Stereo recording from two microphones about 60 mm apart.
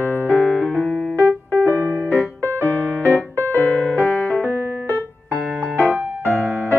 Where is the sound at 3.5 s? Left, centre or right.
Left.